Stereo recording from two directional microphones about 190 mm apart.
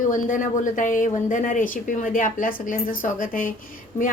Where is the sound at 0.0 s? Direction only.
45° left (ahead or behind).